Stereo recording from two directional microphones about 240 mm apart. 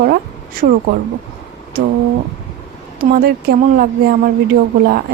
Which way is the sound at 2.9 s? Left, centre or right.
Right.